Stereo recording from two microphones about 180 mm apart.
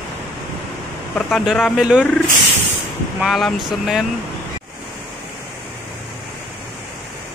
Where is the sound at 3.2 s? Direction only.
Centre (ahead or behind).